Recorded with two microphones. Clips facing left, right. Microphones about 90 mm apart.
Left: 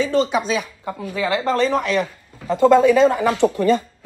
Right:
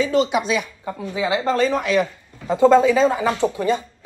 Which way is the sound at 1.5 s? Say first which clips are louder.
Left 1 dB; 40° left (ahead or behind).